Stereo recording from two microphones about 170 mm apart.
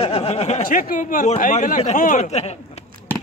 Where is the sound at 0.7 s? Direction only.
55° left (ahead or behind).